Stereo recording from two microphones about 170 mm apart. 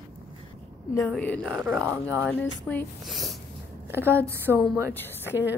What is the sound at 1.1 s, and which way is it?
Speech, 5° left (ahead or behind).